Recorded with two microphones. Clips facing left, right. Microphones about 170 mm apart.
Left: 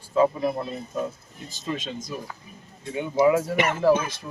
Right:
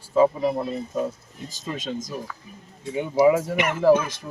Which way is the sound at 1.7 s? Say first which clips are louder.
Right 3 dB; 40° right (ahead or behind).